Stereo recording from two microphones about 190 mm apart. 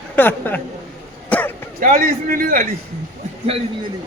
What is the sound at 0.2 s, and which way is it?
Speech, 10° left (ahead or behind).